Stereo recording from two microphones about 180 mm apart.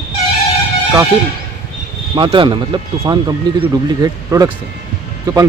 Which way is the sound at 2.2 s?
25° right (ahead or behind).